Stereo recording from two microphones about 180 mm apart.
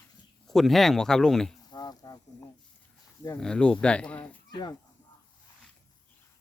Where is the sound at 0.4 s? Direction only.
Centre (ahead or behind).